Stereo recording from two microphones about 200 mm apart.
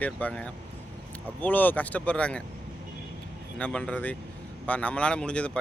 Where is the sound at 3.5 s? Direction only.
5° left (ahead or behind).